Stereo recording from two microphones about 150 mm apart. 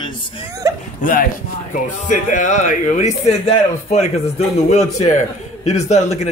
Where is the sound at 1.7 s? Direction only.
60° left (ahead or behind).